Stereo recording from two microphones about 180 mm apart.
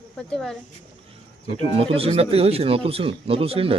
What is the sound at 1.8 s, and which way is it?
Speech, 35° right (ahead or behind).